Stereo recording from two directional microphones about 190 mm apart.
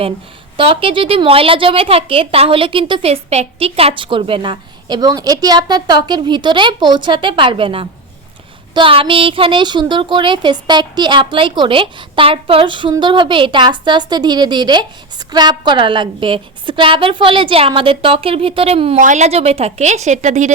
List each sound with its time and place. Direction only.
0.5 s a woman's voice: 30° right (ahead or behind)